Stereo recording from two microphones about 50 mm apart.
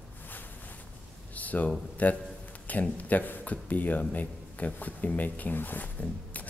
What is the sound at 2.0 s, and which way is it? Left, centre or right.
Speech, left.